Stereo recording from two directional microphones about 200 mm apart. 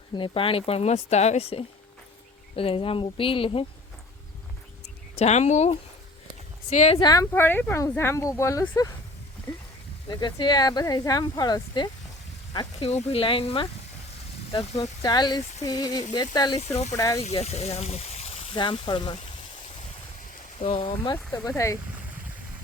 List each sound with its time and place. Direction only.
0.1 s speech: 25° left (ahead or behind)
5.1 s speech: 35° left (ahead or behind)
7.0 s speech: 15° left (ahead or behind)
10.1 s speech: 20° left (ahead or behind)
14.8 s speech: 20° left (ahead or behind)
16.6 s speech: 35° left (ahead or behind)
20.6 s speech: 25° left (ahead or behind)
21.2 s speech: 10° left (ahead or behind)